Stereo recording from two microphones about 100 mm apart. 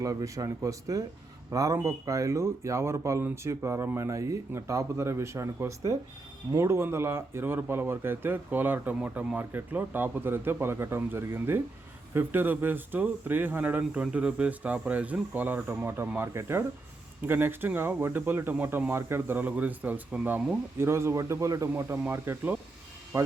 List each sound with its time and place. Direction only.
0.0 s speech: 35° right (ahead or behind)